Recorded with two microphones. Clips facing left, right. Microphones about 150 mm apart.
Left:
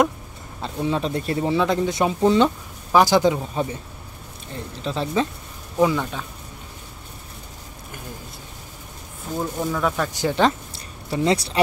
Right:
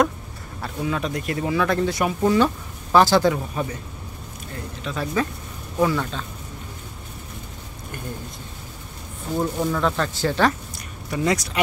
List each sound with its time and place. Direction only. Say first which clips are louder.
0.6 s speech: left 2 dB; 25° left (ahead or behind)
4.8 s speech: left 2 dB; 25° left (ahead or behind)
5.8 s speech: left 2 dB; 15° left (ahead or behind)
9.4 s speech: right 1 dB; 5° left (ahead or behind); by 11.6 s 30° left (ahead or behind)